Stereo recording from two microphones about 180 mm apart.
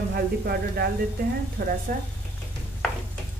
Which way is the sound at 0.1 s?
55° right (ahead or behind).